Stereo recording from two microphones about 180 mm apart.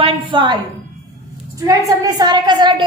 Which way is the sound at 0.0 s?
25° right (ahead or behind).